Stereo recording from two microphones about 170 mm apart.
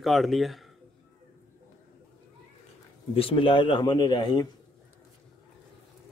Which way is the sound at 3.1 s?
30° left (ahead or behind).